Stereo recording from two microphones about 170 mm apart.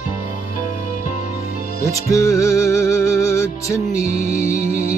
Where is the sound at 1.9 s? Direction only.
20° left (ahead or behind).